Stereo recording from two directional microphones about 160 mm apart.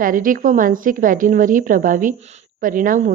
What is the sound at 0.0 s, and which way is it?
A woman's voice, 60° right (ahead or behind).